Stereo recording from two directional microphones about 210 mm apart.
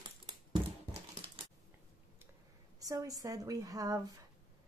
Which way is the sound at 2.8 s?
15° right (ahead or behind).